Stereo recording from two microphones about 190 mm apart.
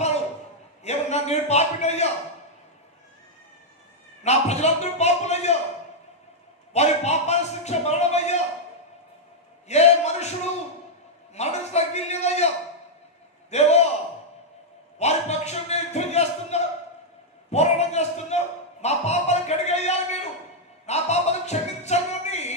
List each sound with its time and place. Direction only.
0.9 s a man's voice: 35° left (ahead or behind)
4.2 s speech: 35° left (ahead or behind)
6.7 s speech: 35° left (ahead or behind)
9.6 s speech: 35° left (ahead or behind)
13.5 s speech: 35° left (ahead or behind)
14.9 s a sound: 35° left (ahead or behind)